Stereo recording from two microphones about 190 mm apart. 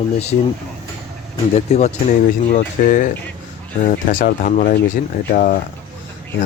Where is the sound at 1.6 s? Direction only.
35° left (ahead or behind).